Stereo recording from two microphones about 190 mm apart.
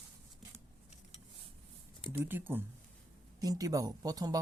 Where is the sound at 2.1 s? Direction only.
10° right (ahead or behind).